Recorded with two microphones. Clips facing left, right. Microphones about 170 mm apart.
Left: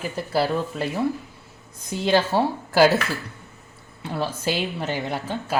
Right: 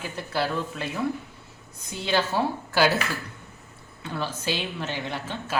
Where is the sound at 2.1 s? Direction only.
35° left (ahead or behind).